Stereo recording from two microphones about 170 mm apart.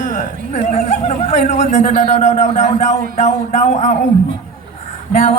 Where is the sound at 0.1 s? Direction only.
45° left (ahead or behind).